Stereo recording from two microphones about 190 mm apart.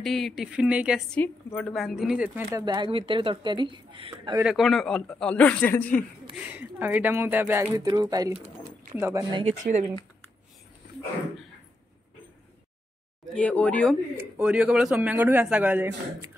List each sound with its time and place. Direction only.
0.0 s speech: centre (ahead or behind)
1.1 s speech: 5° left (ahead or behind); by 2.6 s 10° right (ahead or behind)
2.6 s a woman's voice: 25° right (ahead or behind)
4.4 s speech: centre (ahead or behind)
6.3 s a man's voice: 10° right (ahead or behind)
9.4 s speech: 35° right (ahead or behind)
13.3 s speech: 5° left (ahead or behind)
14.1 s a man's voice: 5° right (ahead or behind)